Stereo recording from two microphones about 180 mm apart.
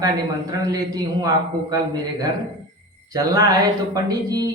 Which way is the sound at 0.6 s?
20° right (ahead or behind).